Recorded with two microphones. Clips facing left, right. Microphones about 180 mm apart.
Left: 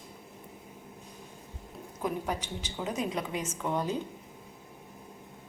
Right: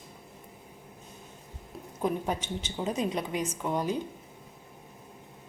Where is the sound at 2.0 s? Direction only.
25° right (ahead or behind).